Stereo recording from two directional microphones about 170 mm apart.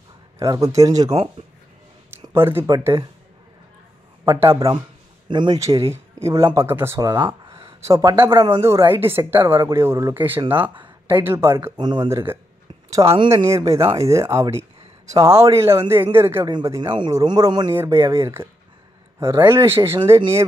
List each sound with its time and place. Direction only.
0.4 s speech: 20° right (ahead or behind)
2.2 s speech: 15° right (ahead or behind)
4.5 s speech: 20° right (ahead or behind)
8.6 s speech: 15° right (ahead or behind)
13.0 s speech: 35° right (ahead or behind)
13.5 s speech: 20° right (ahead or behind)